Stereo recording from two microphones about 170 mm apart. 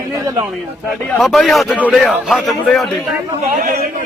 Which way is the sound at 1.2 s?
Centre (ahead or behind).